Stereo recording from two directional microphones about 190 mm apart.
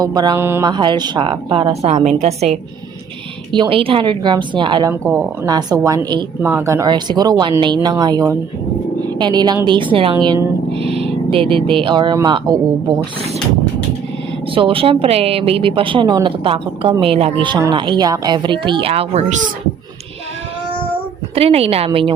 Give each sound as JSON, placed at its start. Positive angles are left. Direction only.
{"t": 0.0, "sound": "a woman's voice", "side_deg": -20}
{"t": 5.0, "sound": "a woman's voice", "side_deg": -10}
{"t": 5.5, "sound": "a woman's voice", "side_deg": -20}
{"t": 9.0, "sound": "dog", "side_deg": -20}
{"t": 9.6, "sound": "speech", "side_deg": -25}
{"t": 14.5, "sound": "a woman's voice", "side_deg": -30}
{"t": 21.3, "sound": "a woman's voice", "side_deg": -30}